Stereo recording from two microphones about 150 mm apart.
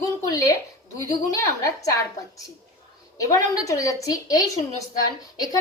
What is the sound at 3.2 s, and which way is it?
A woman's voice, 20° left (ahead or behind).